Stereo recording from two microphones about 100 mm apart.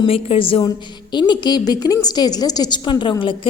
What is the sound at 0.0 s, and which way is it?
Speech, 65° left (ahead or behind).